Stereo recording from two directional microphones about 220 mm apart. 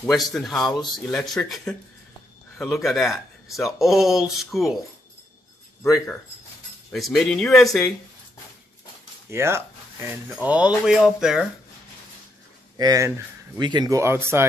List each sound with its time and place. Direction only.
0.0 s speech: centre (ahead or behind)
5.9 s speech: centre (ahead or behind)
9.3 s speech: 10° right (ahead or behind)
12.7 s speech: 15° right (ahead or behind)